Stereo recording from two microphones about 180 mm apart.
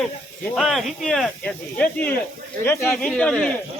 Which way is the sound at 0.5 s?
Centre (ahead or behind).